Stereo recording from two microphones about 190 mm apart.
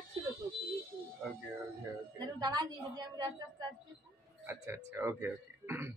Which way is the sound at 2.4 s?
20° right (ahead or behind).